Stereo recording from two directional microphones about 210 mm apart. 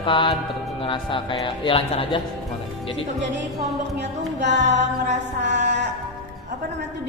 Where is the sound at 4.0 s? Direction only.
55° right (ahead or behind).